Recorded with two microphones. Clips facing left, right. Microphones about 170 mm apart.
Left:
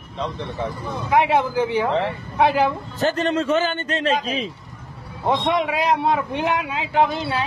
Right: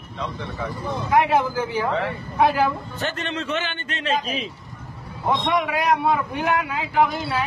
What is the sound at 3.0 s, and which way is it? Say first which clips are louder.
A man's voice: left 9 dB; 40° left (ahead or behind).